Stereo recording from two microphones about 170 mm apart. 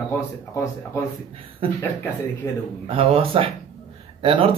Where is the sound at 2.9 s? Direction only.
35° right (ahead or behind).